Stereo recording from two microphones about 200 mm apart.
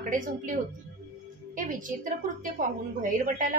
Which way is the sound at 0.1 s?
40° right (ahead or behind).